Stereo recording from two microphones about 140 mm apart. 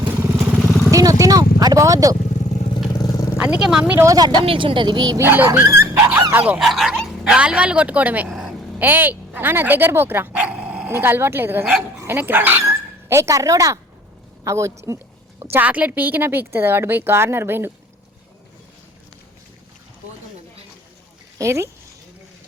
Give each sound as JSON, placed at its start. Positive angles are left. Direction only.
{"t": 0.2, "sound": "vehicle", "side_deg": -15}
{"t": 0.9, "sound": "vehicle", "side_deg": -25}
{"t": 2.9, "sound": "vehicle", "side_deg": 30}
{"t": 3.3, "sound": "a woman's voice", "side_deg": -10}
{"t": 4.0, "sound": "speech", "side_deg": -25}
{"t": 4.4, "sound": "speech", "side_deg": -40}
{"t": 5.2, "sound": "a woman's voice", "side_deg": -15}
{"t": 21.3, "sound": "speech", "side_deg": -20}